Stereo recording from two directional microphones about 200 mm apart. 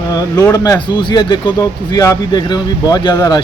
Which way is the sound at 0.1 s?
20° left (ahead or behind).